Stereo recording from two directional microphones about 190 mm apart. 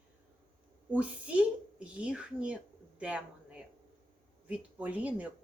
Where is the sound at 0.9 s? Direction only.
5° right (ahead or behind).